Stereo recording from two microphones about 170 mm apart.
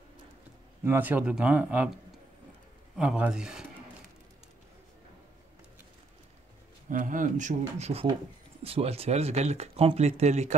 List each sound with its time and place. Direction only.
0.8 s speech: 10° right (ahead or behind)
3.0 s speech: 5° right (ahead or behind)
6.9 s speech: 50° right (ahead or behind)